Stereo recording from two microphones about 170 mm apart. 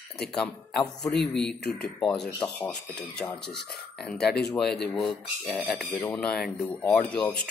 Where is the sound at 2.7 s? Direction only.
5° left (ahead or behind).